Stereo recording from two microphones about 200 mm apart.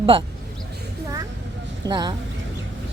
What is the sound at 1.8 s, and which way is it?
Speech, 20° right (ahead or behind).